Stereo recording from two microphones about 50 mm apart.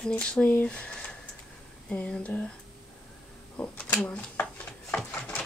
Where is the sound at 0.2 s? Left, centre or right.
Centre.